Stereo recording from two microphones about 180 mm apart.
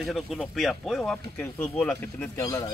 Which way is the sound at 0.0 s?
Centre (ahead or behind).